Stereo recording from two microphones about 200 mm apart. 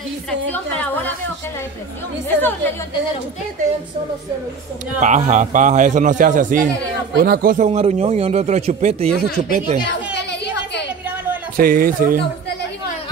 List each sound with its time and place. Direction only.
0.3 s a woman's voice: 5° left (ahead or behind)
2.2 s a woman's voice: 10° left (ahead or behind)
4.9 s speech: 35° right (ahead or behind)
11.5 s speech: 45° right (ahead or behind)